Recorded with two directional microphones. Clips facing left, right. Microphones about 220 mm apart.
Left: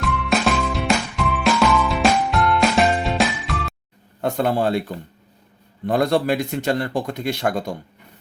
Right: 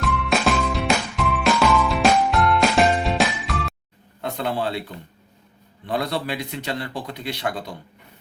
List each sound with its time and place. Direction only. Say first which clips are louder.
0.0 s music: left 1 dB; centre (ahead or behind)
4.2 s speech: left 5 dB; 45° left (ahead or behind)